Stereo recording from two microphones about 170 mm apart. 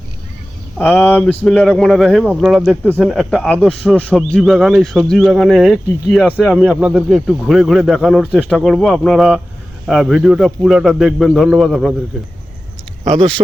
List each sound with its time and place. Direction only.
0.8 s speech: 5° left (ahead or behind)
13.1 s speech: 35° right (ahead or behind)